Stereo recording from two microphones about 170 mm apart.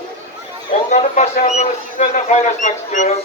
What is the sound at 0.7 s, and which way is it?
Speech, 45° left (ahead or behind).